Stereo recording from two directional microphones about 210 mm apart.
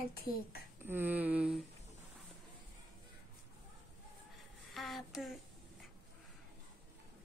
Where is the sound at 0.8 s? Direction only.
10° right (ahead or behind).